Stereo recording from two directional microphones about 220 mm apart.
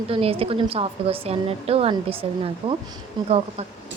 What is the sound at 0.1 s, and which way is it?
A woman's voice, 25° right (ahead or behind).